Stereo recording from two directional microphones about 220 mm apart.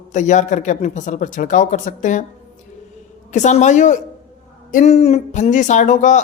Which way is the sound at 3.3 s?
35° left (ahead or behind).